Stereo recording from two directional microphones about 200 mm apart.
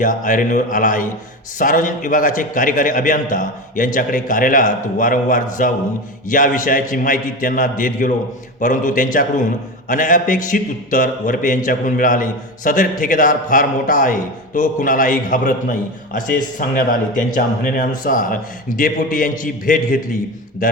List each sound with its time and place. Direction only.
0.0 s a man's voice: 40° left (ahead or behind)
16.6 s speech: 45° left (ahead or behind)